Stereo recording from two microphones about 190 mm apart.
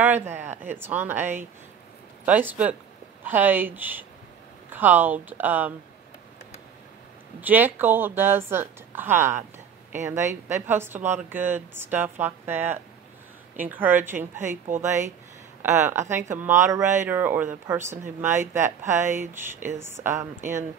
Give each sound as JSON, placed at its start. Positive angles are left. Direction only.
{"t": 0.7, "sound": "speech", "side_deg": -10}
{"t": 7.4, "sound": "speech", "side_deg": -10}
{"t": 14.3, "sound": "speech", "side_deg": -40}
{"t": 14.8, "sound": "speech", "side_deg": -15}